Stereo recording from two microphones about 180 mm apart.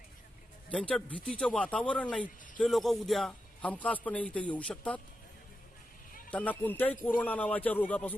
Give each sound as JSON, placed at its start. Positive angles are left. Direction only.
{"t": 0.7, "sound": "a man's voice", "side_deg": 5}
{"t": 6.3, "sound": "a man's voice", "side_deg": 10}